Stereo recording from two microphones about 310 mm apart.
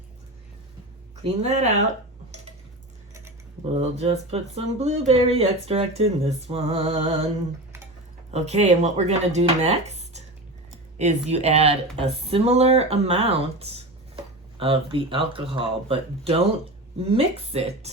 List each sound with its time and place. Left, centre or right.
1.2 s speech: right
3.8 s speech: right
8.3 s speech: right